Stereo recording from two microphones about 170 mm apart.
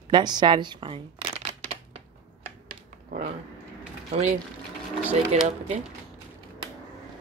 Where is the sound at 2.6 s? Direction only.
55° right (ahead or behind).